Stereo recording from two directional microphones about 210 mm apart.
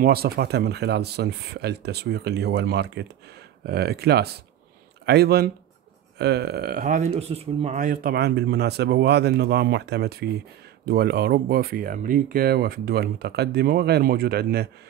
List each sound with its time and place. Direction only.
0.0 s speech: 45° right (ahead or behind)